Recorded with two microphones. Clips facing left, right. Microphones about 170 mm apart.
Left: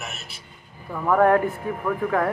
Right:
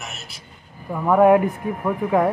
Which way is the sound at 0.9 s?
10° right (ahead or behind).